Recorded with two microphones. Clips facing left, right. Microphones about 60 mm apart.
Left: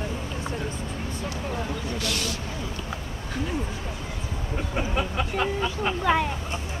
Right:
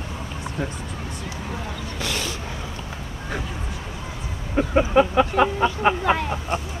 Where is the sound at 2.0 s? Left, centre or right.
Right.